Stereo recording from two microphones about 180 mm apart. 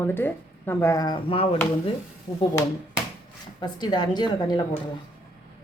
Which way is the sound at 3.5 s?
25° left (ahead or behind).